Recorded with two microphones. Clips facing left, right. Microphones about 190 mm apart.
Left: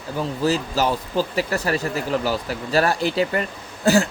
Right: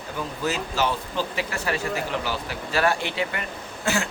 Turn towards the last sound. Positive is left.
turn(degrees=35)  # may be behind; listen again after turning